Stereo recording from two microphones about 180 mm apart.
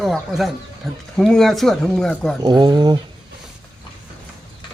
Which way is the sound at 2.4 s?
25° right (ahead or behind).